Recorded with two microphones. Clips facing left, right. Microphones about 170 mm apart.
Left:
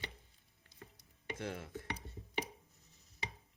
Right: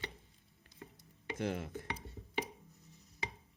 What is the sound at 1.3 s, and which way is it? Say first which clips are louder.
Dishes: right 6 dB; 20° right (ahead or behind).